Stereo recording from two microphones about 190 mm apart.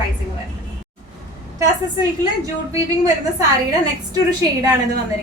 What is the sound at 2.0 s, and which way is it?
A woman's voice, 20° right (ahead or behind).